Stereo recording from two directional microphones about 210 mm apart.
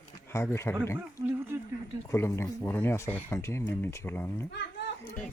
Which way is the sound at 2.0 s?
10° left (ahead or behind).